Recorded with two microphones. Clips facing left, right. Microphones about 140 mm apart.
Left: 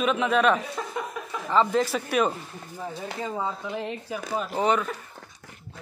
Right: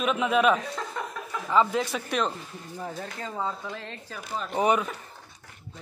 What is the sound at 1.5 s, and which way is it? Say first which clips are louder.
Speech: left 2 dB; 5° right (ahead or behind).